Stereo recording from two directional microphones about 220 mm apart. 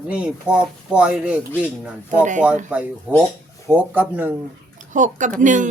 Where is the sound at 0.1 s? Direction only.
5° right (ahead or behind).